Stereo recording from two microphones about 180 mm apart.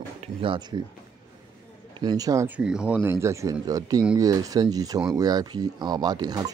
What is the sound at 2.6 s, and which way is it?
Speech, 5° right (ahead or behind).